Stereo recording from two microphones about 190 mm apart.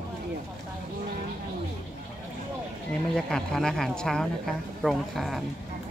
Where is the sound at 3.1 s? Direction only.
5° left (ahead or behind).